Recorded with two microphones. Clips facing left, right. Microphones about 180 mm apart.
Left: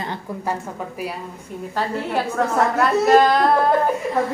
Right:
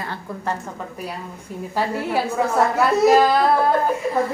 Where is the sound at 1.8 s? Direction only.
10° right (ahead or behind).